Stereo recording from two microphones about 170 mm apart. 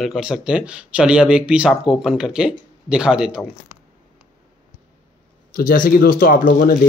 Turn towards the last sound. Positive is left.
turn(degrees=55)  # may be behind; listen again after turning